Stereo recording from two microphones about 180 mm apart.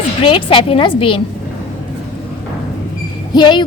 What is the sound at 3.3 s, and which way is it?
Speech, 25° left (ahead or behind).